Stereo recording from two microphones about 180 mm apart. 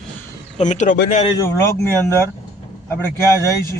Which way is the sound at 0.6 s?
40° left (ahead or behind).